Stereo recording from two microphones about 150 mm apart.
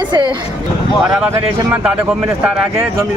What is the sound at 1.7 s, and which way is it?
A man's voice, 10° right (ahead or behind).